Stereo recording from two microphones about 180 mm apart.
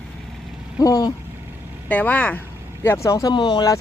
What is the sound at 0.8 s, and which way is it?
Vehicle, 20° left (ahead or behind).